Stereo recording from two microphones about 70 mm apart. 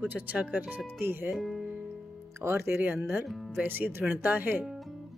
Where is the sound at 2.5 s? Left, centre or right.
Right.